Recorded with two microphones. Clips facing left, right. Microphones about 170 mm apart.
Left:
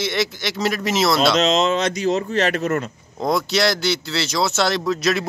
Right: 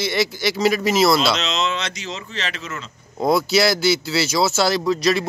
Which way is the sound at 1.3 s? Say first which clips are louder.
Left 6 dB; 45° left (ahead or behind).